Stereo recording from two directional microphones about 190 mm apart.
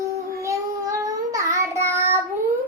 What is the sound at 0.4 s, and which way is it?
Child singing, 15° right (ahead or behind).